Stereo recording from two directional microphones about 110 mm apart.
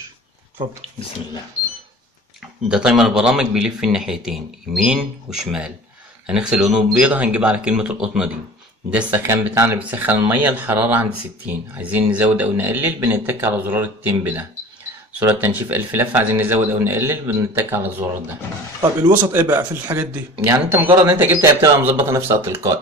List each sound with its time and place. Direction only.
2.7 s a man's voice: 5° right (ahead or behind)
19.7 s speech: 15° right (ahead or behind)